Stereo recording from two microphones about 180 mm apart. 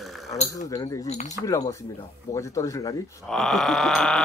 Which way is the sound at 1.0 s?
40° left (ahead or behind).